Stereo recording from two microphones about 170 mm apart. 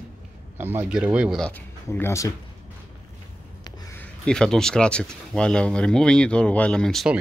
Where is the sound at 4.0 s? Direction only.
5° left (ahead or behind).